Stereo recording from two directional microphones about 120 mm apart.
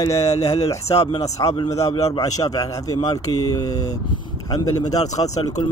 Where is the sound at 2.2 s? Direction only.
30° left (ahead or behind).